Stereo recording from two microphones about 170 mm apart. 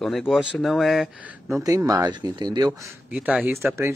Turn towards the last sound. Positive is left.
turn(degrees=-15)  # may be behind; listen again after turning